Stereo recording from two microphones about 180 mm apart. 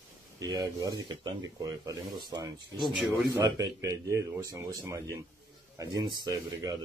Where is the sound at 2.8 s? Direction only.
Centre (ahead or behind).